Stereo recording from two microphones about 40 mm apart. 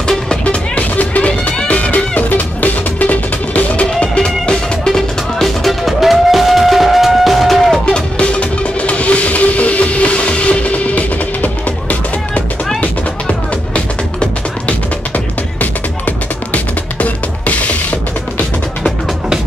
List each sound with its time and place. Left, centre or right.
0.7 s music: left
4.0 s music: left; by 7.8 s centre
7.8 s music: left
15.1 s music: left